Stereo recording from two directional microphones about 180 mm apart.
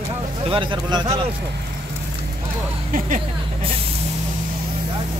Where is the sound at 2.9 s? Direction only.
45° right (ahead or behind).